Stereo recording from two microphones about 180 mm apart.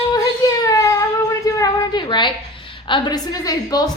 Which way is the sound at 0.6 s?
20° left (ahead or behind).